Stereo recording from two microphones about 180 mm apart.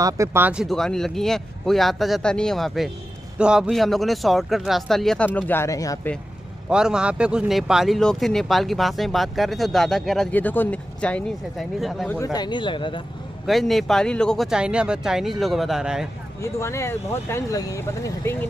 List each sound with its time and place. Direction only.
0.0 s speech: 15° right (ahead or behind); by 5.9 s 20° left (ahead or behind)
6.7 s speech: 5° right (ahead or behind)
12.2 s speech: 20° left (ahead or behind)
13.5 s speech: centre (ahead or behind)
16.3 s speech: 15° left (ahead or behind)